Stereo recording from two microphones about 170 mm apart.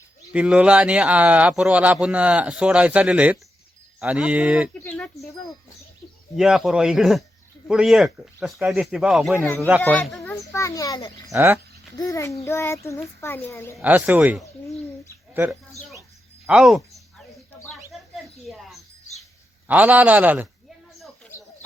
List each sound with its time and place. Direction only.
0.3 s speech: 5° right (ahead or behind)
4.7 s a child's voice: 10° left (ahead or behind)
6.3 s speech: centre (ahead or behind)
9.4 s a child's voice: 10° left (ahead or behind)
11.3 s speech: 15° right (ahead or behind)
11.9 s a child's voice: 20° left (ahead or behind)
13.7 s speech: 5° right (ahead or behind)
16.5 s speech: centre (ahead or behind)
18.4 s wind chime: centre (ahead or behind)
19.6 s speech: 10° right (ahead or behind)